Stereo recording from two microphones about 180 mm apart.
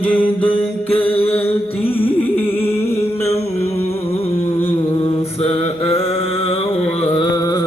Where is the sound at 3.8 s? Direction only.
35° left (ahead or behind).